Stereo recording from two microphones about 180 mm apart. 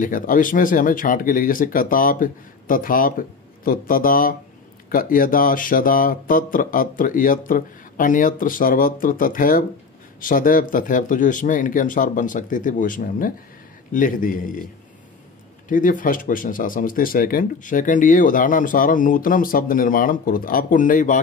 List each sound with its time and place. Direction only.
0.0 s speech: 50° left (ahead or behind)
15.7 s speech: 50° left (ahead or behind)